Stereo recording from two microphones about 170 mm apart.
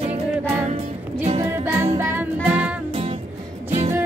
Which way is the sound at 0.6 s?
40° right (ahead or behind).